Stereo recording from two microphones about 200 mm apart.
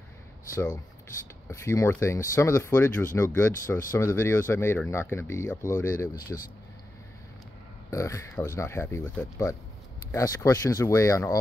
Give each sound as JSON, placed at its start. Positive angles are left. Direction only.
{"t": 1.5, "sound": "speech", "side_deg": 15}
{"t": 7.9, "sound": "speech", "side_deg": 15}